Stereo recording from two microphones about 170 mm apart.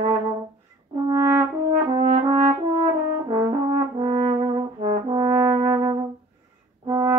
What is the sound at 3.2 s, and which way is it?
Brass instrument, 25° right (ahead or behind).